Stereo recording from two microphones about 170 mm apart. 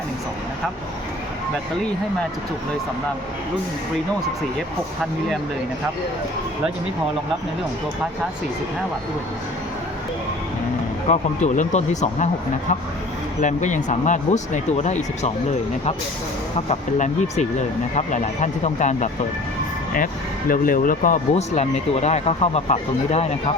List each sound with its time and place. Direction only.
11.1 s speech: 45° left (ahead or behind)
13.4 s speech: 45° left (ahead or behind)
16.6 s speech: 40° left (ahead or behind)
20.5 s speech: 55° left (ahead or behind); by 23.3 s 40° left (ahead or behind)